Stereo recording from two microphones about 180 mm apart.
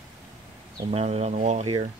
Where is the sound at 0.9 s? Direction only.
35° right (ahead or behind).